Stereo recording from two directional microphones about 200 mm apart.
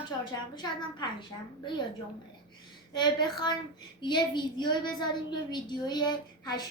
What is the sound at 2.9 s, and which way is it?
A woman's voice, 20° left (ahead or behind).